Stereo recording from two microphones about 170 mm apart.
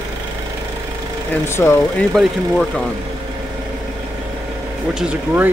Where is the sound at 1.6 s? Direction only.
15° left (ahead or behind).